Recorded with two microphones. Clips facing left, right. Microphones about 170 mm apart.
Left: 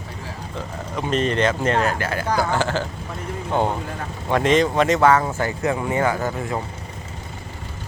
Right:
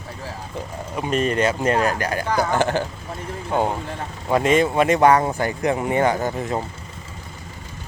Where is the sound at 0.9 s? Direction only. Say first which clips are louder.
Even; 10° right (ahead or behind).